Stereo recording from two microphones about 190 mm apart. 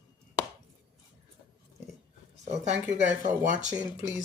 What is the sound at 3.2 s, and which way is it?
Speech, 40° right (ahead or behind).